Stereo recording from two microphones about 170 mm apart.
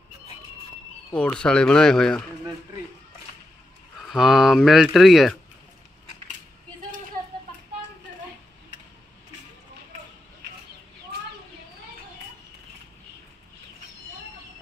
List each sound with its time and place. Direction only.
1.1 s speech: 5° left (ahead or behind)
4.1 s speech: centre (ahead or behind)